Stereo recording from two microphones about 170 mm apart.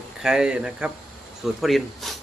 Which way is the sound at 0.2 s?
5° right (ahead or behind).